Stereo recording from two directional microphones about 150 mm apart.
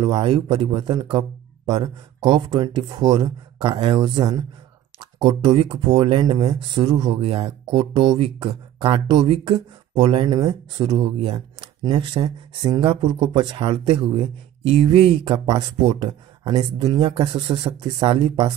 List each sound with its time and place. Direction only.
0.0 s speech: 30° right (ahead or behind)
10.9 s speech: 40° right (ahead or behind)